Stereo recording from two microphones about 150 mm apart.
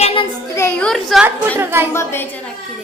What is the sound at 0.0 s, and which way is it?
Child singing, 35° left (ahead or behind).